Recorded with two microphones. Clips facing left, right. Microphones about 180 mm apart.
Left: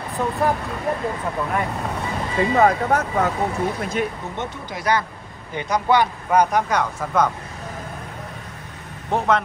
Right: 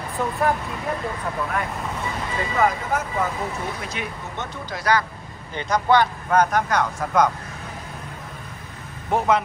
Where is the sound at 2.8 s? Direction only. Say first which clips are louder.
Left 4 dB; 70° left (ahead or behind).